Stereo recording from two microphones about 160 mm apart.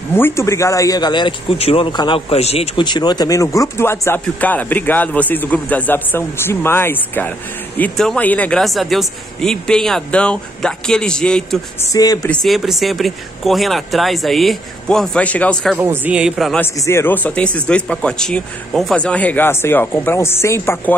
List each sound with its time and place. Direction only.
0.1 s a man's voice: 15° left (ahead or behind)
11.9 s speech: 20° left (ahead or behind)
12.3 s speech: centre (ahead or behind)
15.8 s speech: 10° right (ahead or behind)
16.5 s a man's voice: 15° left (ahead or behind)